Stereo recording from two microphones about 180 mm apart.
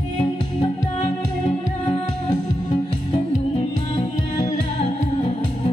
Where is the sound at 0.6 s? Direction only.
30° left (ahead or behind).